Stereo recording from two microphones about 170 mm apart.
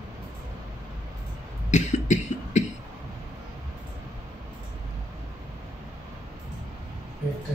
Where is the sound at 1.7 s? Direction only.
45° left (ahead or behind).